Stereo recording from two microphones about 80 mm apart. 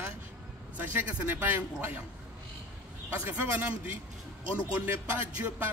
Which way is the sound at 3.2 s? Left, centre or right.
Right.